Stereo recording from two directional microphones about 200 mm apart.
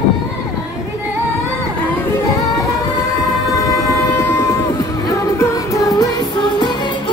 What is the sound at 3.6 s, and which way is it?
Music, 15° left (ahead or behind).